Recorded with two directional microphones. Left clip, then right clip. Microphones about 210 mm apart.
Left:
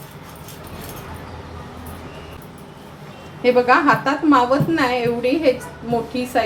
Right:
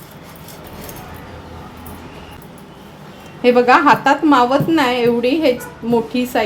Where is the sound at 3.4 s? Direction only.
45° right (ahead or behind).